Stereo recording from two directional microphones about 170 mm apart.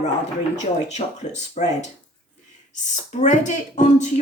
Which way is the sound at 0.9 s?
45° left (ahead or behind).